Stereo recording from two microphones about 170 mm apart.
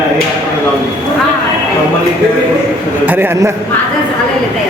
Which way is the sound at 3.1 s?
15° right (ahead or behind).